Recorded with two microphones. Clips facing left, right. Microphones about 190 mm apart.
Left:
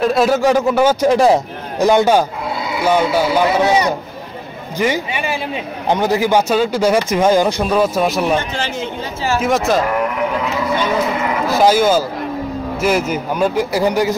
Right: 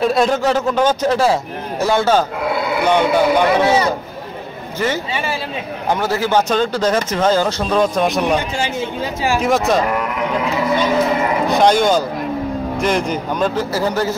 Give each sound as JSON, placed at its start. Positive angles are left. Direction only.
{"t": 0.0, "sound": "speech", "side_deg": 0}
{"t": 2.5, "sound": "a sound", "side_deg": -60}
{"t": 2.8, "sound": "speech", "side_deg": 5}
{"t": 3.6, "sound": "speech", "side_deg": 20}
{"t": 9.4, "sound": "speech", "side_deg": 0}
{"t": 11.4, "sound": "speech", "side_deg": 5}